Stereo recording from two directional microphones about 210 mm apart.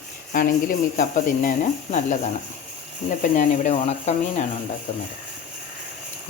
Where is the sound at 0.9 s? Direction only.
40° left (ahead or behind).